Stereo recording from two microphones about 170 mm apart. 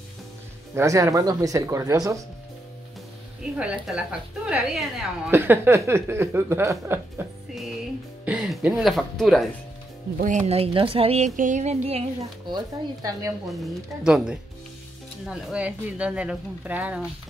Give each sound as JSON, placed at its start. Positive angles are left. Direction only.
{"t": 0.7, "sound": "speech", "side_deg": -20}
{"t": 3.5, "sound": "speech", "side_deg": -5}
{"t": 8.3, "sound": "speech", "side_deg": -5}
{"t": 10.1, "sound": "a woman's voice", "side_deg": -45}
{"t": 12.5, "sound": "speech", "side_deg": -20}
{"t": 13.5, "sound": "speech", "side_deg": 0}